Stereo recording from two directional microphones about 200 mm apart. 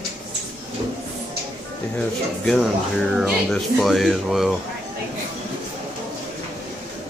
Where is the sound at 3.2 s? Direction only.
Centre (ahead or behind).